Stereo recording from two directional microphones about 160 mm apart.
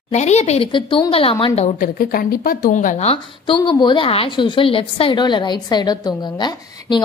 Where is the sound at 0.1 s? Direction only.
45° left (ahead or behind).